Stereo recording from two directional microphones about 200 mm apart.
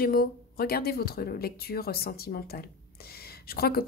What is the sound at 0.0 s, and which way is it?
A woman's voice, 50° left (ahead or behind).